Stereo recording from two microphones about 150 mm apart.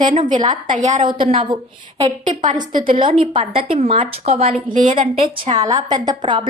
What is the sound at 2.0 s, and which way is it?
Speech, 55° right (ahead or behind).